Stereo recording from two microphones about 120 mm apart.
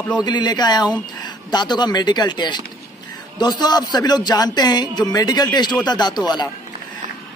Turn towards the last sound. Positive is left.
turn(degrees=35)  # may be behind; listen again after turning